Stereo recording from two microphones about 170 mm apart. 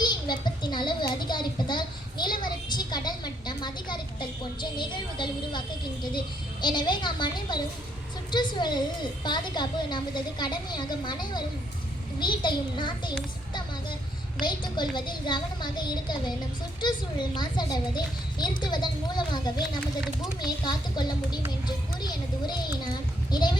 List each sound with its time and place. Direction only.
0.0 s a sound: 25° left (ahead or behind)
4.8 s a child's voice: 25° left (ahead or behind)
14.4 s a child's voice: 25° left (ahead or behind)